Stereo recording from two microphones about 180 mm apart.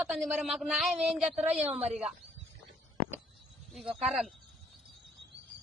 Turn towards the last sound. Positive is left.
turn(degrees=0)  # may be behind; listen again after turning